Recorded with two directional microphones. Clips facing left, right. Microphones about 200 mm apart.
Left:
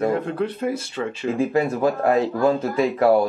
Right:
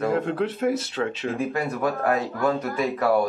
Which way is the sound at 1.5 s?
25° left (ahead or behind).